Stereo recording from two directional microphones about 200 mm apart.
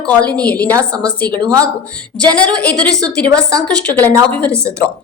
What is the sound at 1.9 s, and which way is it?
A woman's voice, 5° left (ahead or behind).